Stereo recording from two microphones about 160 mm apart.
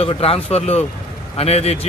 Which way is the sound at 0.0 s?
40° left (ahead or behind).